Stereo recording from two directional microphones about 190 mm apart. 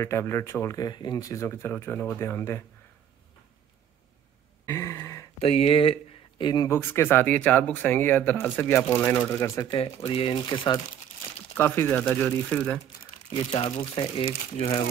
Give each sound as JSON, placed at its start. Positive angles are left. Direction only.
{"t": 0.0, "sound": "speech", "side_deg": 15}
{"t": 4.6, "sound": "a sound", "side_deg": 15}
{"t": 5.4, "sound": "speech", "side_deg": 30}
{"t": 9.8, "sound": "speech", "side_deg": 30}
{"t": 11.5, "sound": "speech", "side_deg": 10}
{"t": 13.4, "sound": "speech", "side_deg": 30}